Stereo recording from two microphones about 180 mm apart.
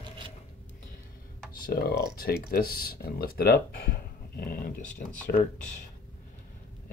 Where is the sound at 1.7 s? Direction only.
60° left (ahead or behind).